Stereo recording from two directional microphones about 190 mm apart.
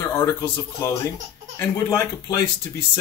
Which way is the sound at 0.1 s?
15° left (ahead or behind).